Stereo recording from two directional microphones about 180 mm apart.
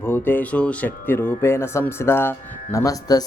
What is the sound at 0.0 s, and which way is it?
Speech, 10° left (ahead or behind).